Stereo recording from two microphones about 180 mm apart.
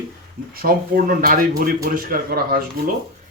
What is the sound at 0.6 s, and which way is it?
A man's voice, 55° right (ahead or behind).